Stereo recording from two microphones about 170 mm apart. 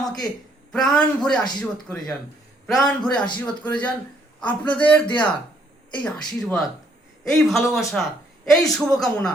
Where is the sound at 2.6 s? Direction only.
Centre (ahead or behind).